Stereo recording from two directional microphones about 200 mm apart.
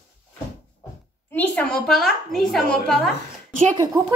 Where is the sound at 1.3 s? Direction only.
10° left (ahead or behind).